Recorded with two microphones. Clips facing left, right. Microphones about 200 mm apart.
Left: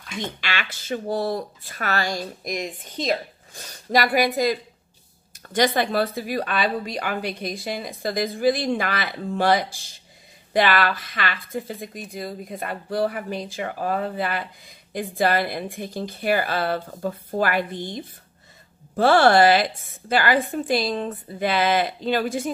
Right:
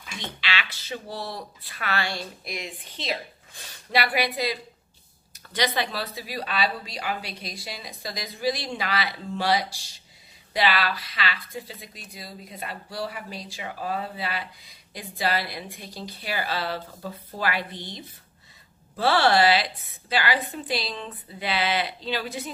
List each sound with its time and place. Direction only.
0.2 s speech: 50° left (ahead or behind)